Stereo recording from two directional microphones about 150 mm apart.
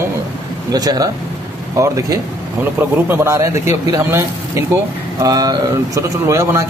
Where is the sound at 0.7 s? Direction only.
25° right (ahead or behind).